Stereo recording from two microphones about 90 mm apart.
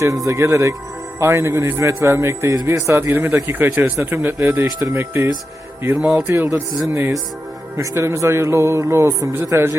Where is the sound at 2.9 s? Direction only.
25° right (ahead or behind).